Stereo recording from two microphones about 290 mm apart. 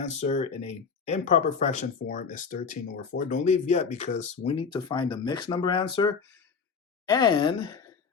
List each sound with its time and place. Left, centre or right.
0.0 s speech: left